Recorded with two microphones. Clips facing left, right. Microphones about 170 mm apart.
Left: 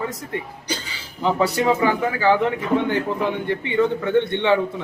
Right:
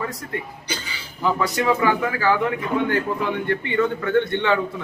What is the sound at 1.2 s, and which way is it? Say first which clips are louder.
A man's voice: left 2 dB; 25° left (ahead or behind).